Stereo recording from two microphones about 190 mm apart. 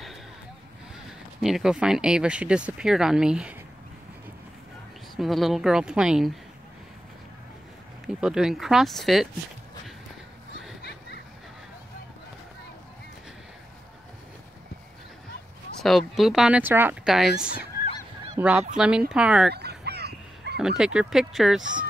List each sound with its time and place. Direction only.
1.4 s speech: centre (ahead or behind)
5.1 s speech: centre (ahead or behind)
8.2 s speech: 5° right (ahead or behind)
10.8 s a sound: 60° left (ahead or behind)
15.8 s speech: centre (ahead or behind)
18.4 s speech: 5° right (ahead or behind)
19.5 s a sound: 60° right (ahead or behind)
20.5 s speech: 5° right (ahead or behind)